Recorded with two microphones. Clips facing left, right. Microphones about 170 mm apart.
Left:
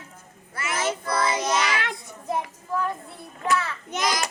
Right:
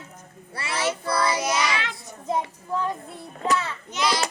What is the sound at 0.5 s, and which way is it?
Child singing, 30° right (ahead or behind).